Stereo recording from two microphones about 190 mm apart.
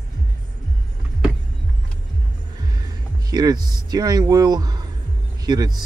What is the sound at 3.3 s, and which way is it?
Speech, 20° right (ahead or behind).